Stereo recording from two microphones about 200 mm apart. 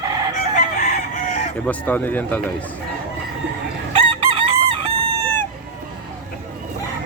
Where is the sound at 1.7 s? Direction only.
10° left (ahead or behind).